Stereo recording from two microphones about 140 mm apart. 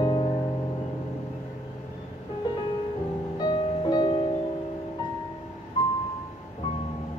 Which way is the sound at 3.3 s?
30° left (ahead or behind).